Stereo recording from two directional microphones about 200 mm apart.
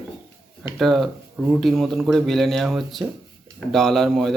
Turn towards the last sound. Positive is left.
turn(degrees=0)  # may be behind; listen again after turning